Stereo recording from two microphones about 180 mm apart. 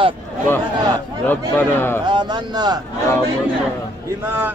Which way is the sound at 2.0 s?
25° right (ahead or behind).